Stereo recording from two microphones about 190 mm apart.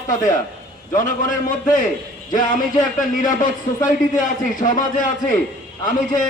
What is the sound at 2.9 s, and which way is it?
A man's voice, 45° left (ahead or behind).